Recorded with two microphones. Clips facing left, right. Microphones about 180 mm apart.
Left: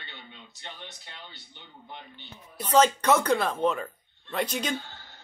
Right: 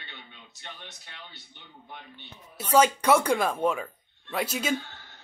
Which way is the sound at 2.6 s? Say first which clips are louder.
Even; 10° right (ahead or behind).